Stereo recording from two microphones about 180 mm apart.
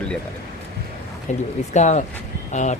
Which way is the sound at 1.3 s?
40° left (ahead or behind).